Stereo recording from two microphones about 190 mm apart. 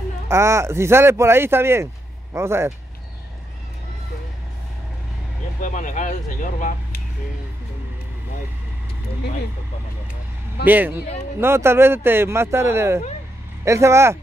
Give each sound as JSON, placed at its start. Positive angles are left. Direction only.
{"t": 0.3, "sound": "speech", "side_deg": -15}
{"t": 5.6, "sound": "speech", "side_deg": 40}
{"t": 10.6, "sound": "speech", "side_deg": -10}